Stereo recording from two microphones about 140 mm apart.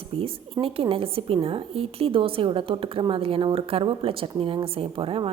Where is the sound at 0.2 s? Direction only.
40° right (ahead or behind).